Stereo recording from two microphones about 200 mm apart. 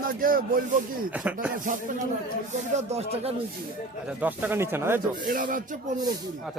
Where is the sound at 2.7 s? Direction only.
30° right (ahead or behind).